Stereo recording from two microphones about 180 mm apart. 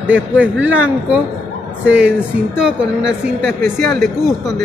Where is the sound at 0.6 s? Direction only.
90° right.